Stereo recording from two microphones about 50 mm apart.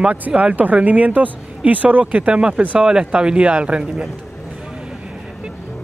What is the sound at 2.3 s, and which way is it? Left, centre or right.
Speech, centre.